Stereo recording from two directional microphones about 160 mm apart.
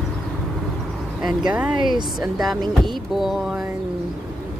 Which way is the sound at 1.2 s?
5° right (ahead or behind).